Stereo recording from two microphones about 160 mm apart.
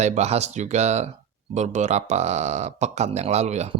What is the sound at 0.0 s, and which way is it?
Speech, 45° right (ahead or behind).